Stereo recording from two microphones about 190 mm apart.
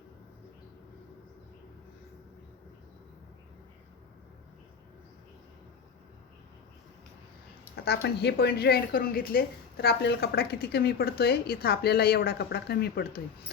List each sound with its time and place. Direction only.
7.9 s a woman's voice: 60° left (ahead or behind)